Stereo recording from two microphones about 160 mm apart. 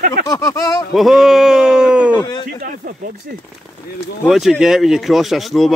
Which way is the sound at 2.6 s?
60° right (ahead or behind).